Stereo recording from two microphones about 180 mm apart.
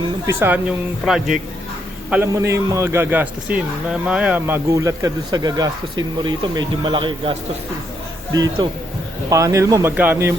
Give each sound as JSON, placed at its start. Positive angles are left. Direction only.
{"t": 0.3, "sound": "a man's voice", "side_deg": -10}